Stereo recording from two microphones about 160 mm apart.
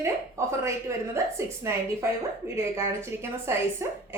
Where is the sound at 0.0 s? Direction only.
20° right (ahead or behind).